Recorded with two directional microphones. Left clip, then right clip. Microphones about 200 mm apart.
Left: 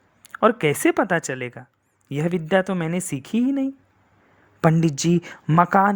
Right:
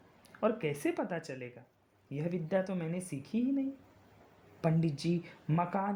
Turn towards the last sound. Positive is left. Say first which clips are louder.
# left 17 dB
turn(degrees=40)  # may be behind; listen again after turning